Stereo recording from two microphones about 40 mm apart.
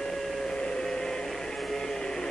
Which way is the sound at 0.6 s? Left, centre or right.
Centre.